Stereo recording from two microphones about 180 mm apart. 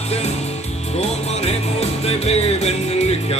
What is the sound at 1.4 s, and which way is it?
Music, 35° left (ahead or behind).